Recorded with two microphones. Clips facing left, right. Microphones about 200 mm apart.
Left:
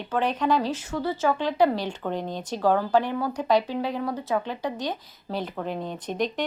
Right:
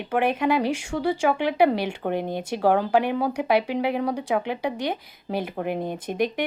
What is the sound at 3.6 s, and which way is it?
Speech, 65° right (ahead or behind).